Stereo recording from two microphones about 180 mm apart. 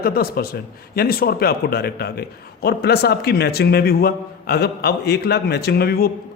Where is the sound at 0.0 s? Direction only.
55° left (ahead or behind).